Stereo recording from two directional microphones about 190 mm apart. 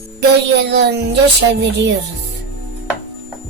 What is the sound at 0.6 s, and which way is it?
Speech, 65° right (ahead or behind).